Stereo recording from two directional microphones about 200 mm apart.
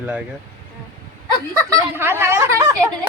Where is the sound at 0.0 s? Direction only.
5° right (ahead or behind).